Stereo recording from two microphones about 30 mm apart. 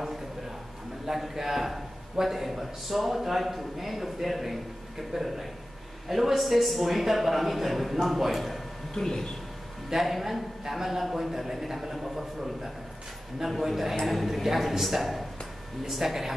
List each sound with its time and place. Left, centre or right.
1.0 s a man's voice: centre
8.9 s speech: centre
9.9 s a man's voice: centre